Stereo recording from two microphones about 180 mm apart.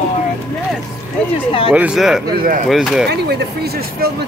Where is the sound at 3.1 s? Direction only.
65° right (ahead or behind).